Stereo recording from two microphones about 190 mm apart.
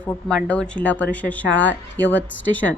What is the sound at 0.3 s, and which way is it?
Speech, 5° left (ahead or behind).